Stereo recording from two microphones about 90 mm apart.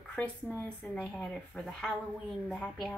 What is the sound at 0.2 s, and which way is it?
Speech, 15° left (ahead or behind).